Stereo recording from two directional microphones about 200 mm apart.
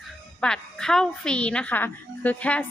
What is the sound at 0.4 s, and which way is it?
A woman's voice, 5° left (ahead or behind).